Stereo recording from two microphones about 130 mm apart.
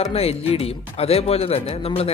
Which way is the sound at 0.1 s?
50° left (ahead or behind).